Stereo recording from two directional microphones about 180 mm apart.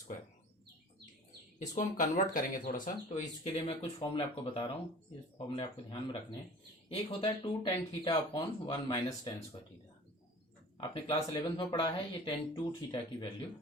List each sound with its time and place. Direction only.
1.5 s speech: 45° left (ahead or behind); by 9.3 s 20° left (ahead or behind)
10.8 s speech: 25° left (ahead or behind)